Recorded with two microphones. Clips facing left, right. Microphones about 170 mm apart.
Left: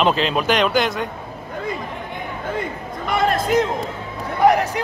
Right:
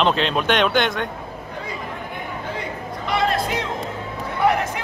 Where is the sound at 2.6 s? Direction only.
50° left (ahead or behind).